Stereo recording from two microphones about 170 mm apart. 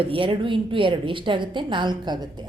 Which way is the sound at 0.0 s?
30° right (ahead or behind).